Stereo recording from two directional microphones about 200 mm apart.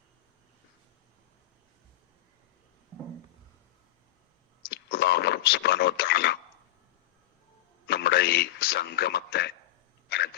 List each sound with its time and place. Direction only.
4.7 s a sound: 55° left (ahead or behind)
7.9 s a man's voice: 55° left (ahead or behind)
10.1 s dog: 55° left (ahead or behind)